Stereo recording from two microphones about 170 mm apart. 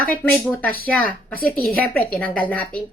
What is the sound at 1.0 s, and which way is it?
Speech, 60° left (ahead or behind).